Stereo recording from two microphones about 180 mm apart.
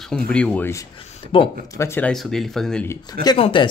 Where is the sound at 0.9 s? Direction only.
30° left (ahead or behind).